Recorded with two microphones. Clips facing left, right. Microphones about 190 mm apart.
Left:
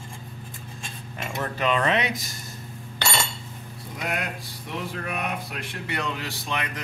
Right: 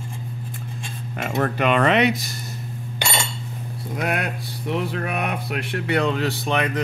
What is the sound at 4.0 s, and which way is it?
Speech, 60° right (ahead or behind).